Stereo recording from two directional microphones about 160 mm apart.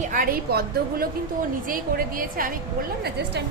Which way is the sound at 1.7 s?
60° right (ahead or behind).